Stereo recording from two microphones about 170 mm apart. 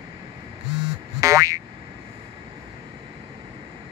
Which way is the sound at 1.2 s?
20° right (ahead or behind).